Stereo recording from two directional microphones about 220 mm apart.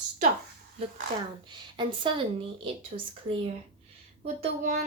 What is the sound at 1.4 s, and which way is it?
Speech, 20° right (ahead or behind).